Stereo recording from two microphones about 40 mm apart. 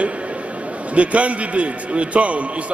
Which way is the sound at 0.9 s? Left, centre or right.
Right.